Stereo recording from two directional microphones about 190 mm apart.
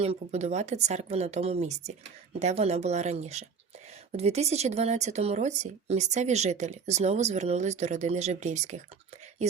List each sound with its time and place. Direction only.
0.0 s speech: 35° right (ahead or behind)